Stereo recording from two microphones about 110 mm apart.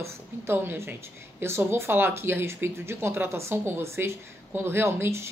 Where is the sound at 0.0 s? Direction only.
20° right (ahead or behind).